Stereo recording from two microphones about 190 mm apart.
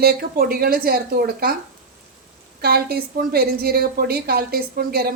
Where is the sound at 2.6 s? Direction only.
55° right (ahead or behind).